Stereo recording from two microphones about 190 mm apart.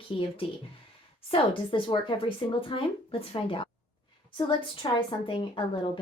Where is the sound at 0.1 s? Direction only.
25° left (ahead or behind).